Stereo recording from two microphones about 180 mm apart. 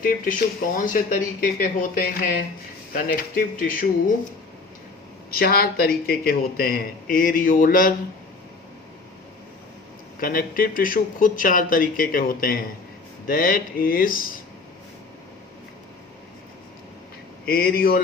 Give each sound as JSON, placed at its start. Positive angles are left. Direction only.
{"t": 0.0, "sound": "speech", "side_deg": 50}
{"t": 5.3, "sound": "speech", "side_deg": 55}
{"t": 10.2, "sound": "speech", "side_deg": 55}
{"t": 17.4, "sound": "speech", "side_deg": 55}